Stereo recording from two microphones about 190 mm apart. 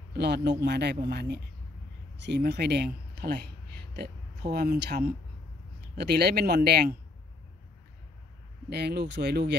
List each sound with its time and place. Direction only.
0.1 s speech: 60° right (ahead or behind)
5.9 s speech: 60° right (ahead or behind)
8.6 s speech: 60° right (ahead or behind)